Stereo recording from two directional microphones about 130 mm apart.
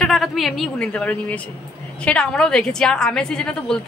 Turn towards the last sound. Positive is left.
turn(degrees=5)  # may be behind; listen again after turning